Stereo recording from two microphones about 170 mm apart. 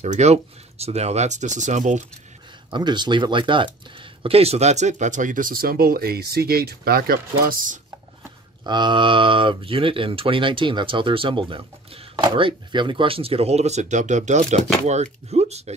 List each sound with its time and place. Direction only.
0.0 s speech: 40° right (ahead or behind)
2.7 s speech: 25° right (ahead or behind); by 7.8 s 55° right (ahead or behind)
8.6 s speech: 25° right (ahead or behind)